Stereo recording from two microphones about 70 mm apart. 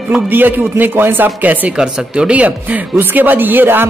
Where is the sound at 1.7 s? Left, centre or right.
Centre.